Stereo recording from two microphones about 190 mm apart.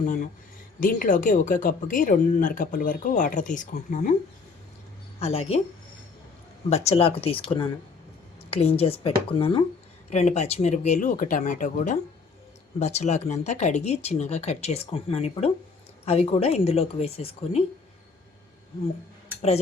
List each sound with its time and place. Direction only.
0.0 s speech: 40° left (ahead or behind)
5.2 s speech: 30° left (ahead or behind)
6.7 s speech: 35° left (ahead or behind)